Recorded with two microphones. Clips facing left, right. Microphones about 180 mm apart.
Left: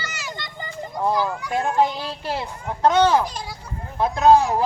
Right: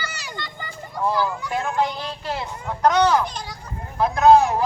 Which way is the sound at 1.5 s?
30° left (ahead or behind).